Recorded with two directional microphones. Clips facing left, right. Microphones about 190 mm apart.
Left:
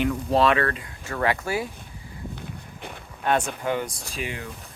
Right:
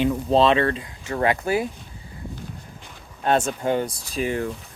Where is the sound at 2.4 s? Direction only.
60° left (ahead or behind).